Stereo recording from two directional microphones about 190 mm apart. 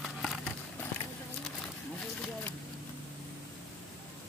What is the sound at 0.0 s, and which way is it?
Vehicle, centre (ahead or behind).